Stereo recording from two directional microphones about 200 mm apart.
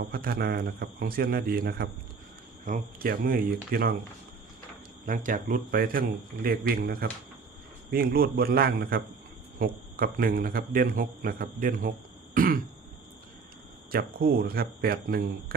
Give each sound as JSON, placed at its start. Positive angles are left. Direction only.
{"t": 0.0, "sound": "a man's voice", "side_deg": -50}
{"t": 5.0, "sound": "a man's voice", "side_deg": -40}
{"t": 13.9, "sound": "a man's voice", "side_deg": -50}